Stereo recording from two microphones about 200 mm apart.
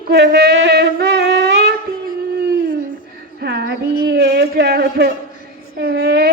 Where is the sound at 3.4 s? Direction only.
55° right (ahead or behind).